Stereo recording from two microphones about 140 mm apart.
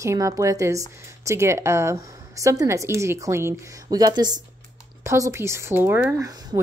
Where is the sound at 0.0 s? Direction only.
20° right (ahead or behind).